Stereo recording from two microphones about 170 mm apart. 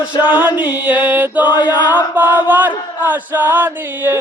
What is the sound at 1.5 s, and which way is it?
Mantra, 25° left (ahead or behind).